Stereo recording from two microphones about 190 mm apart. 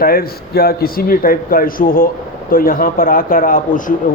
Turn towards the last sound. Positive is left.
turn(degrees=45)  # may be behind; listen again after turning